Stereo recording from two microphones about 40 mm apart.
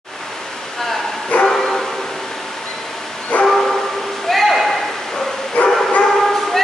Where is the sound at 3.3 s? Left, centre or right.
Left.